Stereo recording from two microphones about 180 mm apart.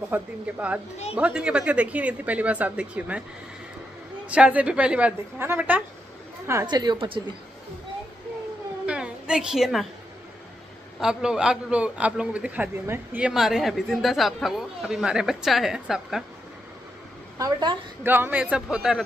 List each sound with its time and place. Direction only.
0.1 s a woman's voice: 10° right (ahead or behind)
4.3 s a woman's voice: 10° right (ahead or behind)
6.4 s a woman's voice: 20° right (ahead or behind)
8.8 s a sound: 5° right (ahead or behind)
11.0 s a man's voice: 5° right (ahead or behind)
17.4 s a woman's voice: 25° right (ahead or behind)
18.0 s a woman's voice: 10° right (ahead or behind)